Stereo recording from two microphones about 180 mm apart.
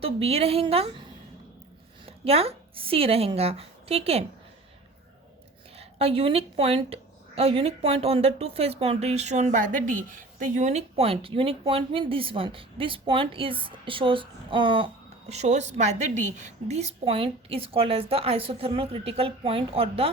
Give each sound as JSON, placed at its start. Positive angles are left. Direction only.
{"t": 0.0, "sound": "a woman's voice", "side_deg": -35}
{"t": 2.2, "sound": "a woman's voice", "side_deg": -35}
{"t": 5.7, "sound": "a woman's voice", "side_deg": -35}